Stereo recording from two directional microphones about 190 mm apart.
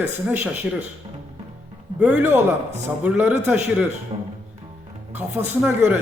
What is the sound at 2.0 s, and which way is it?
A man's voice, 10° right (ahead or behind).